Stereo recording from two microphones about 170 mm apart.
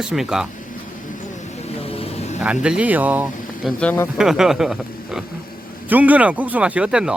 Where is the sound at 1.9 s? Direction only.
35° left (ahead or behind).